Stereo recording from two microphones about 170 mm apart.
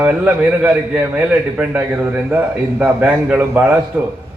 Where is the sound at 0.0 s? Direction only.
10° right (ahead or behind).